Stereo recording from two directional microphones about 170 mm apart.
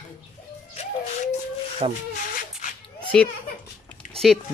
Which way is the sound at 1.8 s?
30° right (ahead or behind).